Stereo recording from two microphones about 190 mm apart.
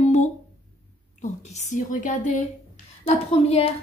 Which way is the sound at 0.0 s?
40° left (ahead or behind).